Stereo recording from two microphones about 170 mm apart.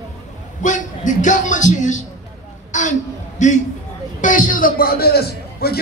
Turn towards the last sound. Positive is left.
turn(degrees=65)  # may be behind; listen again after turning